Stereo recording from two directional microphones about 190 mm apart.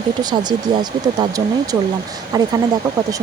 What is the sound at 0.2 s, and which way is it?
Speech, 20° right (ahead or behind).